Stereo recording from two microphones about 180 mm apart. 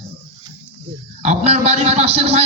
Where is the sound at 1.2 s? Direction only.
35° right (ahead or behind).